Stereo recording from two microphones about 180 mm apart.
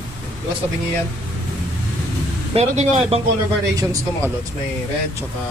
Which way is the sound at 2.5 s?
35° right (ahead or behind).